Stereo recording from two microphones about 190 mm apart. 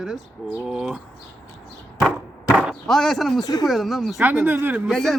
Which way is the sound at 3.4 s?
20° left (ahead or behind).